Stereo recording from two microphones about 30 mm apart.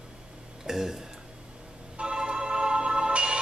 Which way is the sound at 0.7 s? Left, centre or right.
Centre.